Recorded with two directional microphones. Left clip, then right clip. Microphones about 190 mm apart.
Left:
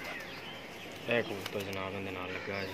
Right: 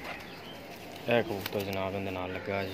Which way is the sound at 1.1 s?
55° right (ahead or behind).